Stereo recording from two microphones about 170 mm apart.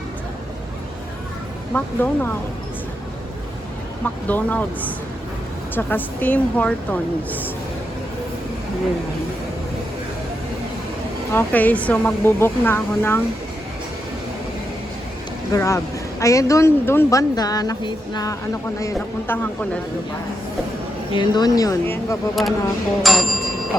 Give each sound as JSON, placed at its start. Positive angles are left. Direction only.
{"t": 1.7, "sound": "speech", "side_deg": 10}
{"t": 4.0, "sound": "speech", "side_deg": 10}
{"t": 11.3, "sound": "speech", "side_deg": 10}
{"t": 15.5, "sound": "speech", "side_deg": 15}
{"t": 19.3, "sound": "speech", "side_deg": 10}
{"t": 21.2, "sound": "speech", "side_deg": 25}
{"t": 22.4, "sound": "speech", "side_deg": 0}